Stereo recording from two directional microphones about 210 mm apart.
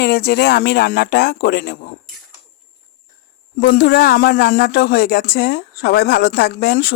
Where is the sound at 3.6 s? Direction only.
50° left (ahead or behind).